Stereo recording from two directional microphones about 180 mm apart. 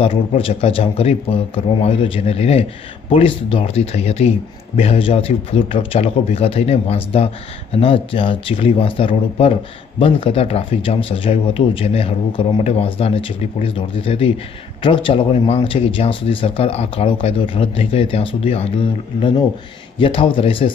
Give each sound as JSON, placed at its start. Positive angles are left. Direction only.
{"t": 0.0, "sound": "speech", "side_deg": 30}
{"t": 20.0, "sound": "speech", "side_deg": 30}